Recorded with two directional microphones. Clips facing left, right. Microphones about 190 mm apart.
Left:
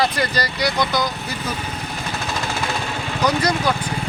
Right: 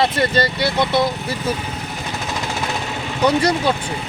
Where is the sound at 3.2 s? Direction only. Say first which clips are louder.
Right 3 dB; 25° right (ahead or behind).